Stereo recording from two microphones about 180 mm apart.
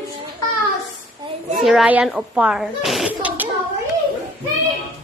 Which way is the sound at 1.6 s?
5° right (ahead or behind).